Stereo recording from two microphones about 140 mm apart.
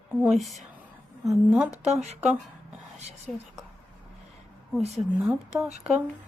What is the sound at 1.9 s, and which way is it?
Speech, 50° right (ahead or behind).